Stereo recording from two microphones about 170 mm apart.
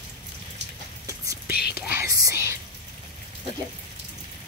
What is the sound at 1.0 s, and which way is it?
Whispering, 20° right (ahead or behind).